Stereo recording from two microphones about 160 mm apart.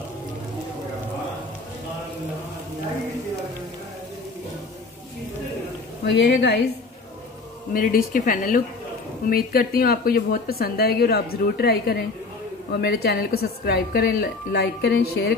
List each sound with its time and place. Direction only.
6.0 s a woman's voice: 90° left
7.7 s a woman's voice: 60° left (ahead or behind); by 15.3 s 90° left